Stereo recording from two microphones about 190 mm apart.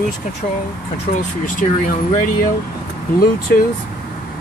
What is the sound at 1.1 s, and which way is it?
Speech, 45° left (ahead or behind).